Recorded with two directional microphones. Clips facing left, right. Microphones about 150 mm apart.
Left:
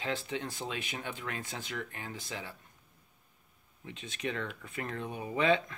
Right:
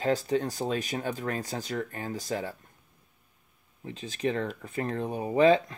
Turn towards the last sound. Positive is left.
turn(degrees=-35)  # may be behind; listen again after turning